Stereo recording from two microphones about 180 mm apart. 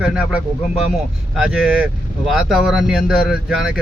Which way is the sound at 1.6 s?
10° right (ahead or behind).